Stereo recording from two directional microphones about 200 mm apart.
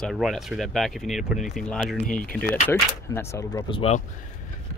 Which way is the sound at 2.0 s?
40° left (ahead or behind).